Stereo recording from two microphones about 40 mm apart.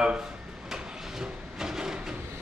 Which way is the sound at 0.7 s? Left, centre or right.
Centre.